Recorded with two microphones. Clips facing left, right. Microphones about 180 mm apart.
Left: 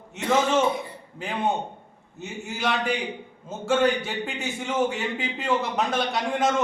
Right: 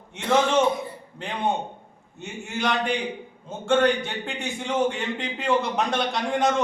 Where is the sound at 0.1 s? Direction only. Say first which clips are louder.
Right 1 dB; centre (ahead or behind).